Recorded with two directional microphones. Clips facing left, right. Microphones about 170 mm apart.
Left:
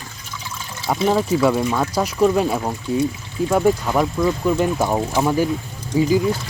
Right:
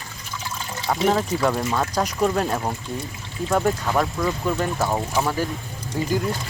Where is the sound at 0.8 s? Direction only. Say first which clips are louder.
Left 2 dB; 5° left (ahead or behind).